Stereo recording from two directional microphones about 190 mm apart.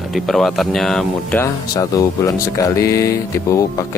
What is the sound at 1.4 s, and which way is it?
Speech, 15° left (ahead or behind).